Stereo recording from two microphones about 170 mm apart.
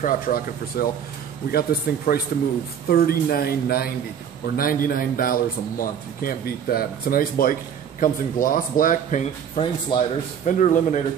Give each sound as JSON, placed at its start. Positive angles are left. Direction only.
{"t": 0.0, "sound": "speech", "side_deg": 60}
{"t": 9.6, "sound": "speech", "side_deg": 40}